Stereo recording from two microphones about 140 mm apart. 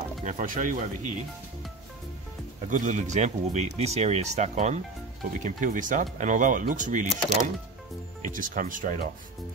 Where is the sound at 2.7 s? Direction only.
60° right (ahead or behind).